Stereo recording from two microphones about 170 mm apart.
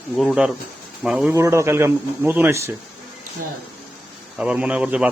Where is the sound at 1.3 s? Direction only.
15° right (ahead or behind).